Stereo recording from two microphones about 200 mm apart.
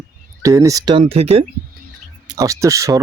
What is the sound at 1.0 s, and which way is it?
Speech, 30° right (ahead or behind).